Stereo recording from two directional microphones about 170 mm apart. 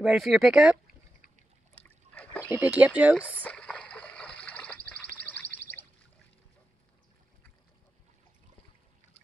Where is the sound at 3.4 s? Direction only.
5° left (ahead or behind).